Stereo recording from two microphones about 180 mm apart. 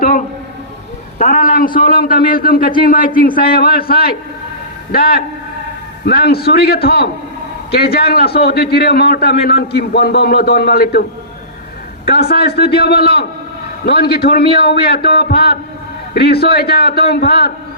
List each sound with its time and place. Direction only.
1.2 s a man's voice: 45° left (ahead or behind)
12.0 s a man's voice: 60° left (ahead or behind)